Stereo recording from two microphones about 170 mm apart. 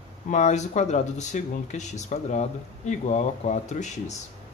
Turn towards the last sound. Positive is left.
turn(degrees=45)  # may be behind; listen again after turning